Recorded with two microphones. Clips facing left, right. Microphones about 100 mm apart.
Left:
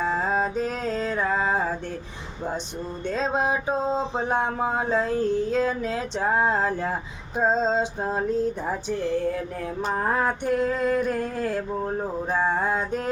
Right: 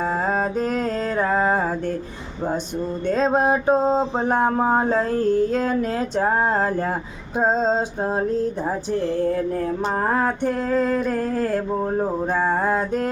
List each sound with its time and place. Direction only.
0.0 s music: 45° right (ahead or behind)
3.1 s mantra: 45° right (ahead or behind)
9.9 s a sound: 40° right (ahead or behind)
12.5 s mantra: 45° right (ahead or behind)